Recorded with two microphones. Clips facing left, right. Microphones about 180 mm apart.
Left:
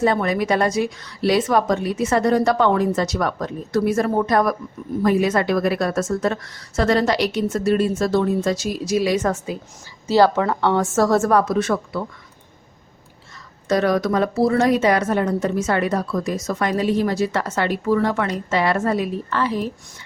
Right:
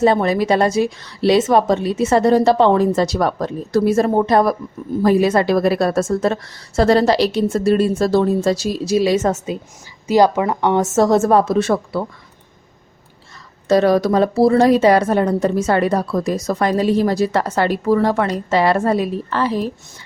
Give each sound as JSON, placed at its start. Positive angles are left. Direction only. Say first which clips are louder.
{"t": 0.0, "sound": "a woman's voice", "louder": "right 4 dB", "side_deg": -30}
{"t": 13.7, "sound": "a woman's voice", "louder": "right 5 dB", "side_deg": -30}